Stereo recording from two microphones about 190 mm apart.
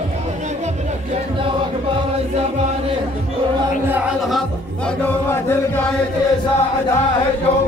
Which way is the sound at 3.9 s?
10° right (ahead or behind).